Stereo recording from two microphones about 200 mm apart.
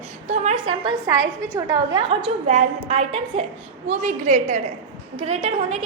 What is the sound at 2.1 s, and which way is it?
A woman's voice, 35° right (ahead or behind).